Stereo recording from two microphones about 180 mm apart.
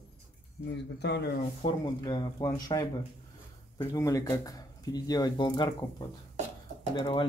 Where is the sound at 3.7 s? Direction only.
20° left (ahead or behind).